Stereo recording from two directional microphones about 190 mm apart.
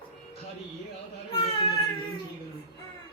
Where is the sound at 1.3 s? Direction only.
30° left (ahead or behind).